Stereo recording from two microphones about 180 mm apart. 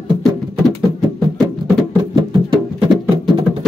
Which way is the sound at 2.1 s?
25° right (ahead or behind).